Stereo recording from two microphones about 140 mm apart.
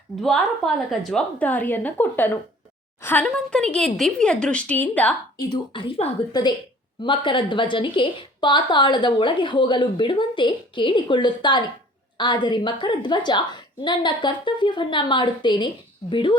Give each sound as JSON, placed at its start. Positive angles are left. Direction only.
{"t": 0.2, "sound": "a woman's voice", "side_deg": 0}
{"t": 5.4, "sound": "a woman's voice", "side_deg": 30}
{"t": 6.0, "sound": "a woman's voice", "side_deg": 50}
{"t": 7.0, "sound": "a woman's voice", "side_deg": 35}